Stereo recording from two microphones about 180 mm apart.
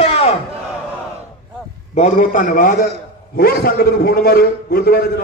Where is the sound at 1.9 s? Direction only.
40° left (ahead or behind).